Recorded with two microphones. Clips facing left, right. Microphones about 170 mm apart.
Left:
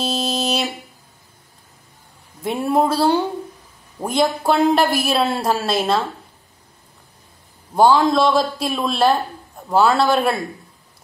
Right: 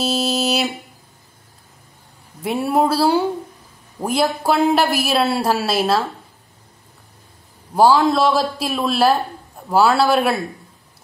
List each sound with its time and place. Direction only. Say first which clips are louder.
0.0 s a sound: right 2 dB; 5° right (ahead or behind)
2.4 s speech: even; 5° right (ahead or behind)
7.7 s a man's voice: even; 5° right (ahead or behind)